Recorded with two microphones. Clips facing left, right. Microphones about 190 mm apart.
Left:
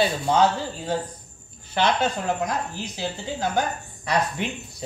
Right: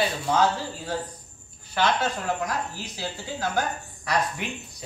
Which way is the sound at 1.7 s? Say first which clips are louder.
Left 2 dB; 20° left (ahead or behind).